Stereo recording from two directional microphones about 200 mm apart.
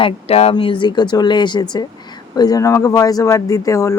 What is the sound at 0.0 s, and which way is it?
Speech, 30° left (ahead or behind).